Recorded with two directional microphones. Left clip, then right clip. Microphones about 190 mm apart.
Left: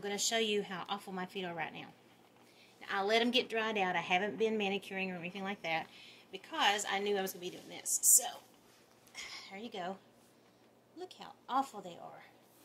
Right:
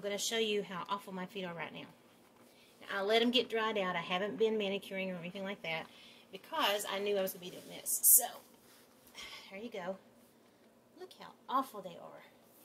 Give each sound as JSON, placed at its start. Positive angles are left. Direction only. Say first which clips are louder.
{"t": 0.0, "sound": "a woman's voice", "louder": "left 1 dB", "side_deg": 40}
{"t": 11.0, "sound": "a woman's voice", "louder": "left 3 dB", "side_deg": 40}